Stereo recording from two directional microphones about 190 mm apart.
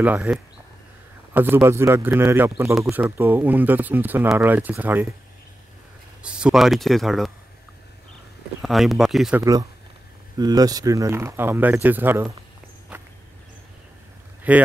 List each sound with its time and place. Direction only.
0.0 s speech: 5° right (ahead or behind)
6.2 s speech: 5° right (ahead or behind)
8.6 s speech: centre (ahead or behind)
9.4 s speech: 20° right (ahead or behind)
14.5 s speech: 5° right (ahead or behind)